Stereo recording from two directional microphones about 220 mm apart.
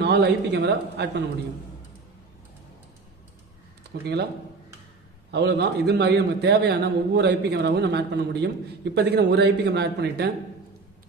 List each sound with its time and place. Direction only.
0.0 s a man's voice: 50° right (ahead or behind)
3.9 s a man's voice: 50° right (ahead or behind)
5.3 s a man's voice: 50° right (ahead or behind)